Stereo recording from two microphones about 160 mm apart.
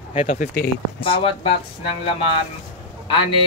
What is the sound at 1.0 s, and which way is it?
Speech, 35° left (ahead or behind).